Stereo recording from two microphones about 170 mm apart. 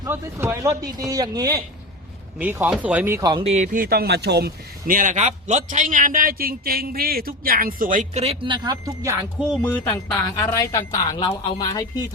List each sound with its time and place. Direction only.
0.0 s speech: 15° right (ahead or behind)
2.4 s speech: 10° right (ahead or behind)
3.2 s speech: 25° right (ahead or behind)
3.4 s speech: 40° right (ahead or behind)
8.2 s speech: 35° right (ahead or behind)
9.5 s speech: 10° left (ahead or behind)
10.2 s speech: 20° left (ahead or behind)